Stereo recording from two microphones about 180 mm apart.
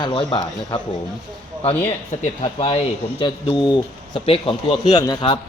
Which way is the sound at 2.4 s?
30° left (ahead or behind).